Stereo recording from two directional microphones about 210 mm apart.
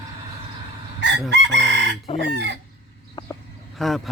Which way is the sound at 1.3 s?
55° right (ahead or behind).